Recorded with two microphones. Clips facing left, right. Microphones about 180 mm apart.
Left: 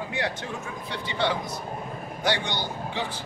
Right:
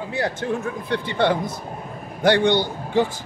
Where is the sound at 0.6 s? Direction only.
55° right (ahead or behind).